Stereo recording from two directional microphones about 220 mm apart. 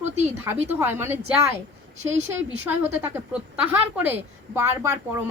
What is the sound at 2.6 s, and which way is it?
A woman's voice, 10° right (ahead or behind).